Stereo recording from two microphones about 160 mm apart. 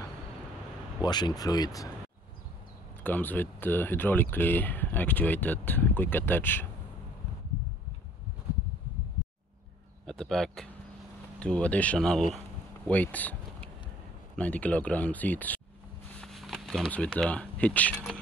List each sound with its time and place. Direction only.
1.0 s speech: 25° left (ahead or behind)
3.0 s speech: 10° left (ahead or behind)
10.0 s speech: 5° left (ahead or behind)
12.8 s a sound: 10° left (ahead or behind)
14.3 s speech: 10° left (ahead or behind)